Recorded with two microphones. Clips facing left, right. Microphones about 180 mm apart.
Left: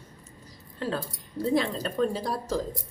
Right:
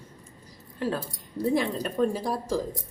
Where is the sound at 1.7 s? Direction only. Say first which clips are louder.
Right 1 dB; 10° right (ahead or behind).